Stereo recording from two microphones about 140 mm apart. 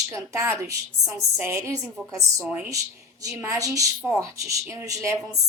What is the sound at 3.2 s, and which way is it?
A woman's voice, 20° right (ahead or behind).